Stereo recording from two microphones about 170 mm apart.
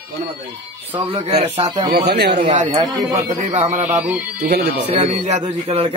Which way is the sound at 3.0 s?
20° right (ahead or behind).